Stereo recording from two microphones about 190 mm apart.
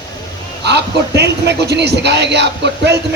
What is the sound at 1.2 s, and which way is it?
Speech, 60° right (ahead or behind).